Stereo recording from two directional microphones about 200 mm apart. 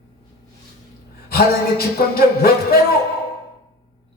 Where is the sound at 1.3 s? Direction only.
50° left (ahead or behind).